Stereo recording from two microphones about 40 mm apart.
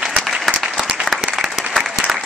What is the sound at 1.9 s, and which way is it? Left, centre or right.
Applause, centre.